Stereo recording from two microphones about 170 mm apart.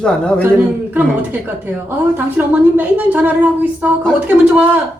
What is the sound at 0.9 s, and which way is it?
Speech, 10° right (ahead or behind).